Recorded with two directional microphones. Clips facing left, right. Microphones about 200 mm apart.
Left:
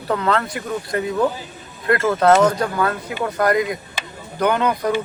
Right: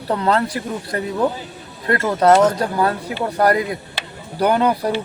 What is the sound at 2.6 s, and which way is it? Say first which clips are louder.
Speech: right 2 dB; 35° right (ahead or behind).